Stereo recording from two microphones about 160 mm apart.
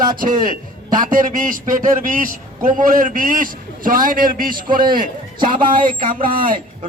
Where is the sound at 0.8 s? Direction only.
55° right (ahead or behind).